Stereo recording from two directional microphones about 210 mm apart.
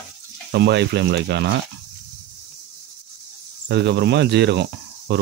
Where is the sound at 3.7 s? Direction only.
55° right (ahead or behind).